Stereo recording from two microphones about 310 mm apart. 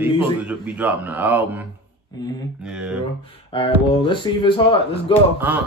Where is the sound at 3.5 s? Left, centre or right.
Centre.